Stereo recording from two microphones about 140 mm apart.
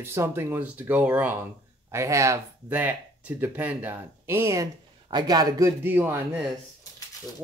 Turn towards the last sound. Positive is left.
turn(degrees=-15)  # may be behind; listen again after turning